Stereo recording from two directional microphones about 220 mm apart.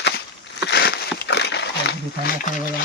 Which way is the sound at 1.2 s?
50° left (ahead or behind).